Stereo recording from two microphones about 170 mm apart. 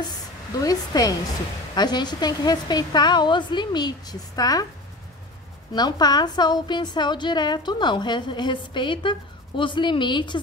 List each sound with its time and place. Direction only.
0.0 s a sound: 20° left (ahead or behind)
1.8 s a woman's voice: 25° left (ahead or behind)
5.7 s a woman's voice: 25° left (ahead or behind)